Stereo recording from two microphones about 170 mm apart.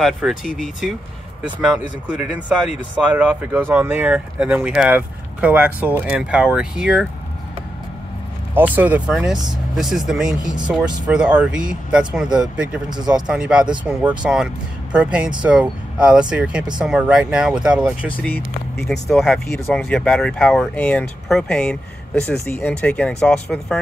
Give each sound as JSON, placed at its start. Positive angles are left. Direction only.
{"t": 0.0, "sound": "speech", "side_deg": 0}
{"t": 8.5, "sound": "speech", "side_deg": -10}
{"t": 18.0, "sound": "speech", "side_deg": 10}